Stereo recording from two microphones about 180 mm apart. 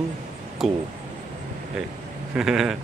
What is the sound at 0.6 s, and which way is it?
Speech, centre (ahead or behind).